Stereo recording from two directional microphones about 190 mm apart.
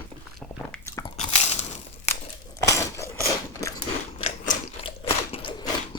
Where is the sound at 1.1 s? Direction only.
35° left (ahead or behind).